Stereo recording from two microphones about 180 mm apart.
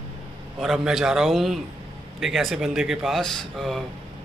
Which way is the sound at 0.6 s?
Centre (ahead or behind).